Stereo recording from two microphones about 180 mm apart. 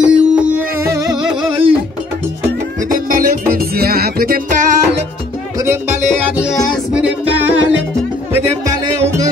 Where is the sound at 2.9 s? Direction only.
50° right (ahead or behind).